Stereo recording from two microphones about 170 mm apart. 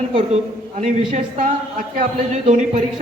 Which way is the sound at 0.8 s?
45° right (ahead or behind).